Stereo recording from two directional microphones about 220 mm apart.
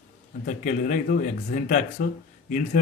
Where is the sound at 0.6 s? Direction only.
35° left (ahead or behind).